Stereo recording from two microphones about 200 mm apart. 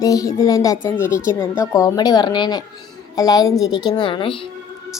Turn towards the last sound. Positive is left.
turn(degrees=25)  # may be behind; listen again after turning